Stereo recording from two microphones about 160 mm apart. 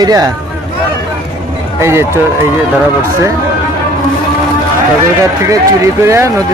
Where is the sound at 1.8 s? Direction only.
15° right (ahead or behind).